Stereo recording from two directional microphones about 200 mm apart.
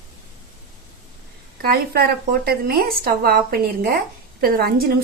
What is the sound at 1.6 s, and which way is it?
A woman's voice, 50° right (ahead or behind).